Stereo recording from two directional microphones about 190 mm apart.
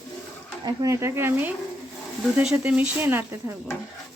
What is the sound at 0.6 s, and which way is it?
Speech, 20° right (ahead or behind).